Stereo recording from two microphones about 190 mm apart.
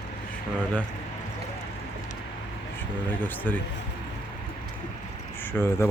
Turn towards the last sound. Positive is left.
turn(degrees=10)  # may be behind; listen again after turning